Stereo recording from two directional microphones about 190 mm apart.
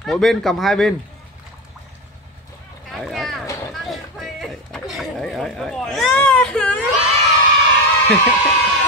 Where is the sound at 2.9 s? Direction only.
Centre (ahead or behind).